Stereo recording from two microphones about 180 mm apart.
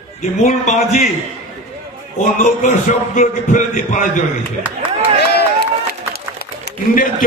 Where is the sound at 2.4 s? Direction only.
45° left (ahead or behind).